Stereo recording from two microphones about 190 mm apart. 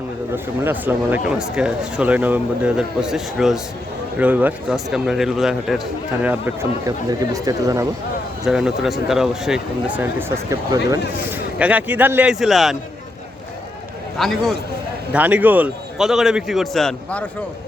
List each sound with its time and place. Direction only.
0.6 s speech: 10° right (ahead or behind)
6.2 s speech: 10° right (ahead or behind)
8.4 s speech: 5° right (ahead or behind)
14.2 s speech: centre (ahead or behind)